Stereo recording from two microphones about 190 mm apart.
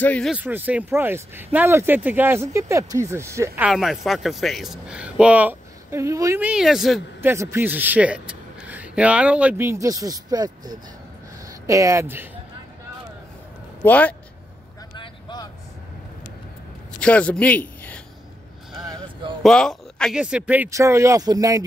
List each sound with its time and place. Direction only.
0.0 s speech: 5° left (ahead or behind)
0.3 s speech: 10° right (ahead or behind)
13.8 s speech: 10° left (ahead or behind)
15.0 s vehicle: 20° left (ahead or behind)
17.0 s a man's voice: 5° left (ahead or behind)
19.4 s speech: 5° left (ahead or behind); by 21.6 s 20° right (ahead or behind)